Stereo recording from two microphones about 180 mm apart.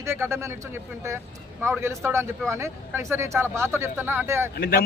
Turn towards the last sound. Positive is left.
turn(degrees=55)  # may be behind; listen again after turning